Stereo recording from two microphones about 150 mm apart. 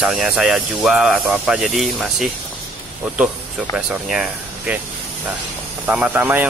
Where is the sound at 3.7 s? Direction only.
5° right (ahead or behind).